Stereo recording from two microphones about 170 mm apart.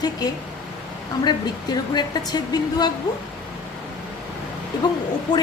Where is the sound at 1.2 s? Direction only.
25° left (ahead or behind).